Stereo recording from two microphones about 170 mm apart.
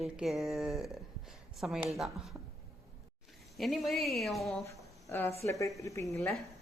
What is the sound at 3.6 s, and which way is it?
A woman's voice, centre (ahead or behind).